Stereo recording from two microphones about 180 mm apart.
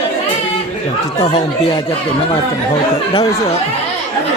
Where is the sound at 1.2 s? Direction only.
30° left (ahead or behind).